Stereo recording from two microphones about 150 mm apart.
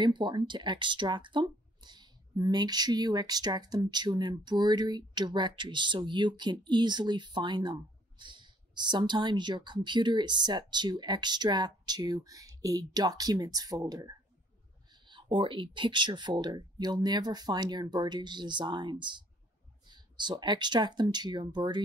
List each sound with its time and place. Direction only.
0.0 s speech: 30° right (ahead or behind)
15.0 s speech: 35° right (ahead or behind)